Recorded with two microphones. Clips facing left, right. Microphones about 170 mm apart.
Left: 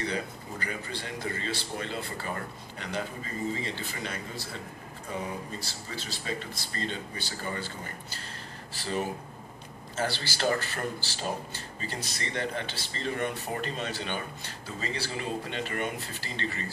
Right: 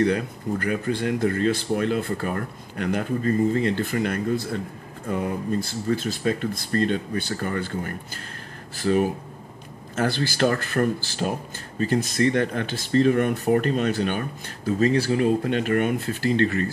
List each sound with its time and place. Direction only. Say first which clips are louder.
0.0 s speech: right 11 dB; 55° right (ahead or behind)